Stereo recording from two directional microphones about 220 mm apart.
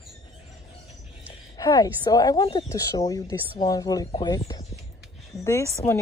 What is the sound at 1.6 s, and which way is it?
Speech, 15° left (ahead or behind).